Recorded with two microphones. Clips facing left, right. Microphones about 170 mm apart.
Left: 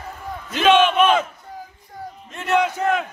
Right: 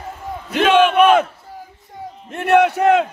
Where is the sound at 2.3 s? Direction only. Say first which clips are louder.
Right 6 dB; 65° right (ahead or behind).